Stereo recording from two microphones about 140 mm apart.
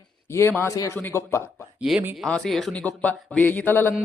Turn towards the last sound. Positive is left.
turn(degrees=15)  # may be behind; listen again after turning